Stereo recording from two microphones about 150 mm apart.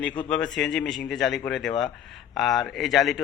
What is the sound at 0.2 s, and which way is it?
Speech, 5° left (ahead or behind).